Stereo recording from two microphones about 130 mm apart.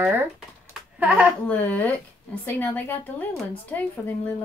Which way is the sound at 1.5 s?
15° left (ahead or behind).